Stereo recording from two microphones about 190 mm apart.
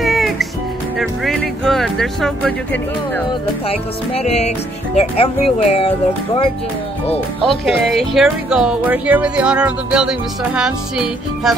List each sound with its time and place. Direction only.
0.0 s music: centre (ahead or behind)
0.9 s speech: centre (ahead or behind)
3.6 s speech: 35° left (ahead or behind)
7.4 s speech: centre (ahead or behind)